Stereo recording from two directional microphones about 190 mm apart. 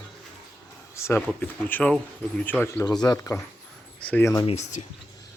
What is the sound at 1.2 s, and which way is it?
Speech, 5° left (ahead or behind).